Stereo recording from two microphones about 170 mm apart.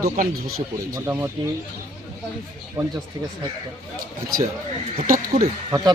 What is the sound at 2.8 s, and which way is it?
Speech, 20° right (ahead or behind).